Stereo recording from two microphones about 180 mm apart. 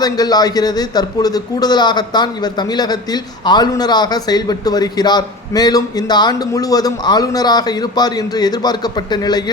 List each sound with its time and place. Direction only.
0.0 s a man's voice: 20° left (ahead or behind)